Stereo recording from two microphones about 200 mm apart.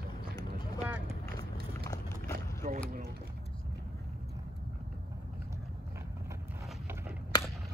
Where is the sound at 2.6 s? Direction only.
30° right (ahead or behind).